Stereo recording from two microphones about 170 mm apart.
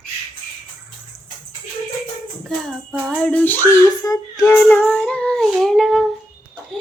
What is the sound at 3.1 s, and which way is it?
Speech, 5° left (ahead or behind).